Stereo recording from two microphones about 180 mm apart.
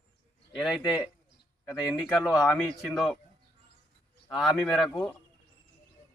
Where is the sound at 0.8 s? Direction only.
25° left (ahead or behind).